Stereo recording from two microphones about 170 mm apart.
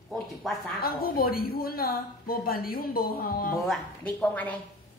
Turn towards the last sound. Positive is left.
turn(degrees=10)  # may be behind; listen again after turning